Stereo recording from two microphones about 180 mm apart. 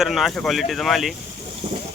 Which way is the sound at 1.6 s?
30° right (ahead or behind).